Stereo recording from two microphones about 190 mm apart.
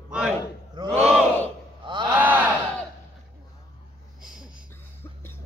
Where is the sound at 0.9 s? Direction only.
5° right (ahead or behind).